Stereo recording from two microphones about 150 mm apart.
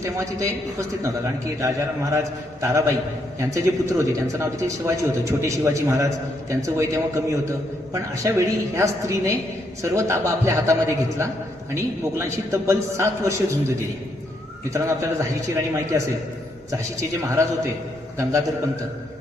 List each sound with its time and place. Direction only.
0.0 s a man's voice: 20° right (ahead or behind)